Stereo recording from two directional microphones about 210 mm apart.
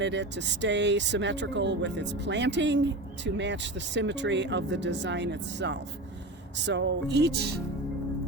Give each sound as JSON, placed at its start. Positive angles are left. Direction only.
{"t": 0.0, "sound": "speech", "side_deg": -55}
{"t": 6.7, "sound": "music", "side_deg": -55}